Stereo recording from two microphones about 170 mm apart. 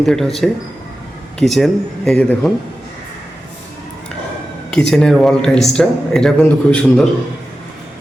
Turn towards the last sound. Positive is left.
turn(degrees=5)  # may be behind; listen again after turning